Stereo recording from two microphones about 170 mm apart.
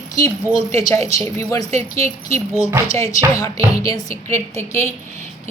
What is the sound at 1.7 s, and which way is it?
Speech, 40° right (ahead or behind).